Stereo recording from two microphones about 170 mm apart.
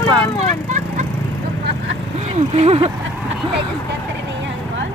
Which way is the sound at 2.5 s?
40° right (ahead or behind).